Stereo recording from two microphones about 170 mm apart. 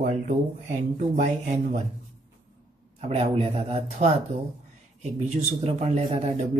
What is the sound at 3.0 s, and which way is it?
A man's voice, 35° right (ahead or behind).